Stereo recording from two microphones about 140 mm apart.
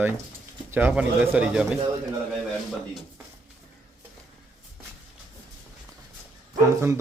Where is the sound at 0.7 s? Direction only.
10° right (ahead or behind).